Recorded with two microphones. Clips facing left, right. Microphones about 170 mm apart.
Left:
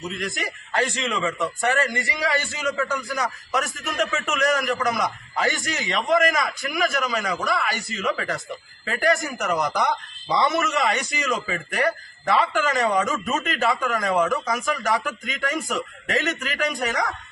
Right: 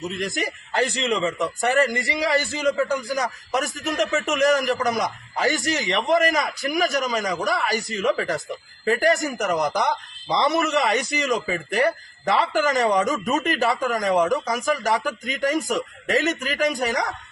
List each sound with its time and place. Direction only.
0.3 s a man's voice: 35° right (ahead or behind)